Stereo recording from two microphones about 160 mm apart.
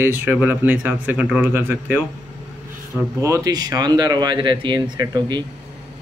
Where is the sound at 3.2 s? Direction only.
20° right (ahead or behind).